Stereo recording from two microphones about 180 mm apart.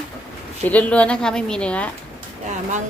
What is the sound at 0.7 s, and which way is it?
A woman's voice, 10° left (ahead or behind).